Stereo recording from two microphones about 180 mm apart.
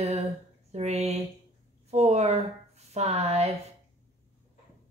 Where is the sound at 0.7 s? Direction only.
35° right (ahead or behind).